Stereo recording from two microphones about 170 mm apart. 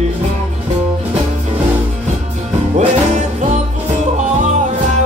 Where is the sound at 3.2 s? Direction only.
45° right (ahead or behind).